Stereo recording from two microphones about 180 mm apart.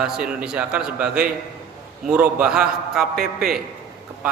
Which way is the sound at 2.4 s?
5° right (ahead or behind).